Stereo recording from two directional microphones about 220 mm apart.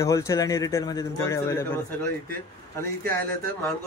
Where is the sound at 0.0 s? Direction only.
15° left (ahead or behind).